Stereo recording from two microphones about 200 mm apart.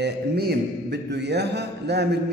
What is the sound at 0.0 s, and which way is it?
A man's voice, 55° right (ahead or behind).